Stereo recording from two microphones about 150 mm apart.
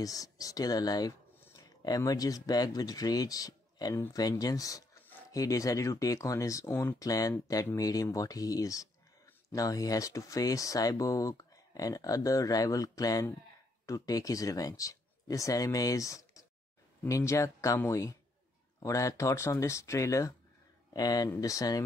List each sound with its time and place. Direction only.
0.0 s speech: 25° left (ahead or behind)